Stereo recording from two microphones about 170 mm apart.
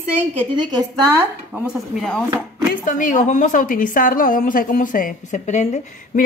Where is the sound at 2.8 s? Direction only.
50° left (ahead or behind).